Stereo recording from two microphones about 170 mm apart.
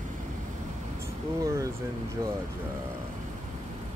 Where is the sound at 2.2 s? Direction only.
20° right (ahead or behind).